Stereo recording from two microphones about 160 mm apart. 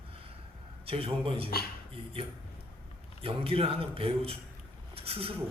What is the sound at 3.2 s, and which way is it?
A man's voice, 35° right (ahead or behind).